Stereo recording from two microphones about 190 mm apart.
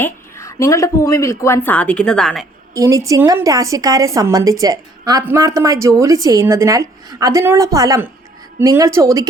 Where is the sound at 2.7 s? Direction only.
15° right (ahead or behind).